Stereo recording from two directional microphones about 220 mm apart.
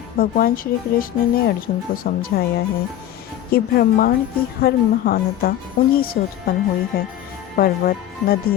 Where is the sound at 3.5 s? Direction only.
45° left (ahead or behind).